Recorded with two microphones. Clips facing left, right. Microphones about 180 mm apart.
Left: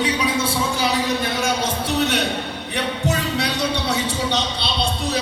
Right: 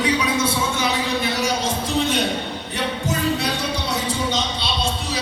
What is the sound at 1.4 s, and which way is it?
A man's voice, 65° left (ahead or behind).